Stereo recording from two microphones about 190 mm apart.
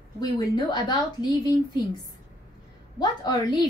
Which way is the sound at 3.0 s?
20° left (ahead or behind).